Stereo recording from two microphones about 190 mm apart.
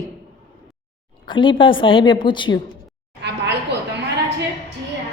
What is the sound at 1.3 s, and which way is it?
A woman's voice, 25° left (ahead or behind).